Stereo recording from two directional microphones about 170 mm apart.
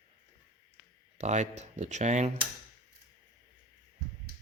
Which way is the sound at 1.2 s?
40° right (ahead or behind).